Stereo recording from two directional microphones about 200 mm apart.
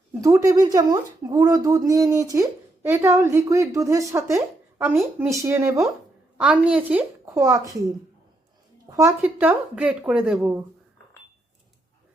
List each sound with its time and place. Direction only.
0.1 s speech: 15° right (ahead or behind)
9.0 s speech: 10° right (ahead or behind)